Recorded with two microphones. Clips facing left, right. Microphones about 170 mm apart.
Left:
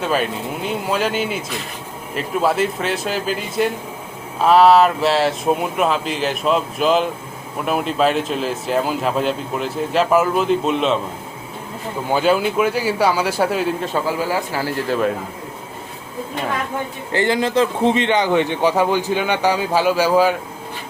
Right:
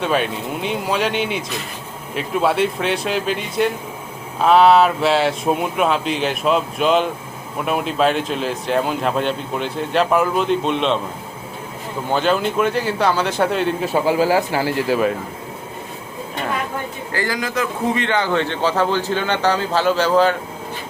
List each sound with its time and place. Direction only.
0.0 s speech: centre (ahead or behind)
12.1 s a man's voice: 5° left (ahead or behind)
14.1 s speech: 25° right (ahead or behind)
14.8 s a man's voice: 5° right (ahead or behind)
17.1 s a man's voice: 25° left (ahead or behind)